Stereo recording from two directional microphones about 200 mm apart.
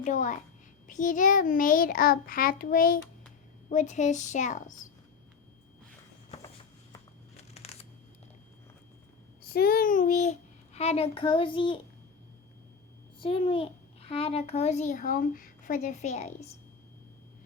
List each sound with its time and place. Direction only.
0.0 s a woman's voice: 40° left (ahead or behind)
7.3 s a sound: 30° left (ahead or behind)
9.4 s a child's voice: 50° left (ahead or behind); by 11.8 s 25° left (ahead or behind)
13.1 s a child's voice: 25° left (ahead or behind)